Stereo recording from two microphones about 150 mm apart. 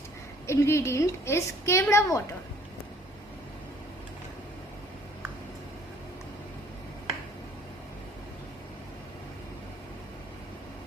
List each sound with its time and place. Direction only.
0.4 s a woman's voice: 20° left (ahead or behind)